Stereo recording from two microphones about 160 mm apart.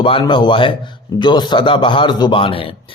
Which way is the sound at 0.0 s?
30° left (ahead or behind).